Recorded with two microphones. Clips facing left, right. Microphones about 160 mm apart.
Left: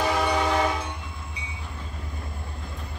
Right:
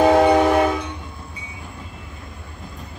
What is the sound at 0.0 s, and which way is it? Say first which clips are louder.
Train: right 11 dB; 80° right.